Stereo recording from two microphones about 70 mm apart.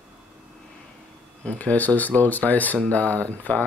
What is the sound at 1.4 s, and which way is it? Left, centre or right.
Speech, centre.